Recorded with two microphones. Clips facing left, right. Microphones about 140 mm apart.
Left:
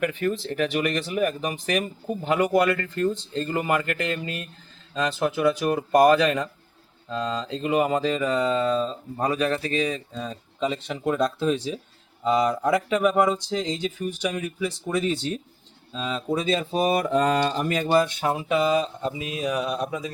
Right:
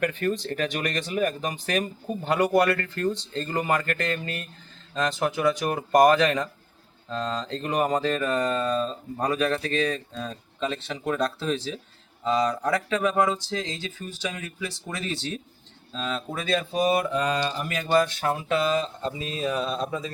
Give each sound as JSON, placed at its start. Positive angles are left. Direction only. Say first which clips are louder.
{"t": 0.0, "sound": "speech", "louder": "left 1 dB", "side_deg": 5}
{"t": 16.4, "sound": "speech", "louder": "right 1 dB", "side_deg": 25}
{"t": 17.0, "sound": "mantra", "louder": "left 4 dB", "side_deg": 40}
{"t": 17.4, "sound": "speech", "louder": "left 4 dB", "side_deg": 40}
{"t": 17.9, "sound": "speech", "louder": "right 1 dB", "side_deg": 20}